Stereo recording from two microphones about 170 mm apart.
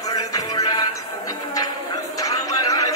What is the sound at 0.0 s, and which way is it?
Music, 20° left (ahead or behind).